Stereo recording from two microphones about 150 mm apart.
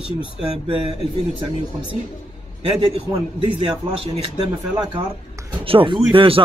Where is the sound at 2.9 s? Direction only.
35° right (ahead or behind).